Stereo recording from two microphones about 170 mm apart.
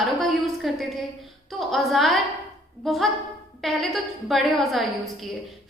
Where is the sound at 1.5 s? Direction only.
Centre (ahead or behind).